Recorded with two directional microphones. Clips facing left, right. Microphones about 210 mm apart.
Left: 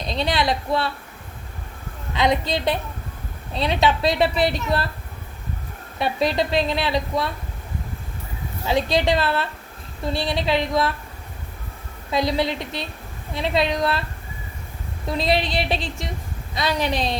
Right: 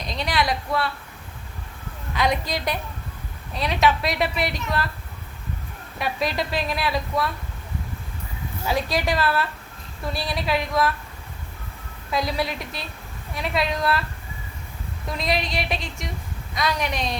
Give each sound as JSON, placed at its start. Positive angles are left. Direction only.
{"t": 0.1, "sound": "a woman's voice", "side_deg": 25}
{"t": 2.1, "sound": "a woman's voice", "side_deg": 25}
{"t": 6.0, "sound": "a woman's voice", "side_deg": 30}
{"t": 8.6, "sound": "a woman's voice", "side_deg": 25}
{"t": 12.1, "sound": "a woman's voice", "side_deg": 25}
{"t": 15.1, "sound": "a woman's voice", "side_deg": 30}